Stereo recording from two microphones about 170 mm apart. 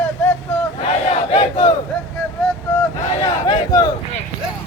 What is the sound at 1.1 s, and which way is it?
Battle cry, 35° left (ahead or behind).